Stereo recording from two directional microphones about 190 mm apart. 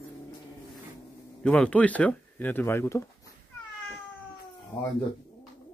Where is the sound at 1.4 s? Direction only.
5° left (ahead or behind).